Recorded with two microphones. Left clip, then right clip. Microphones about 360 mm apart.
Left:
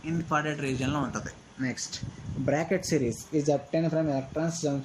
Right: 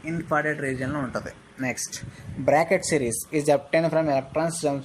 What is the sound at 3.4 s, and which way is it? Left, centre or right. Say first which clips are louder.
Speech: right 6 dB; centre.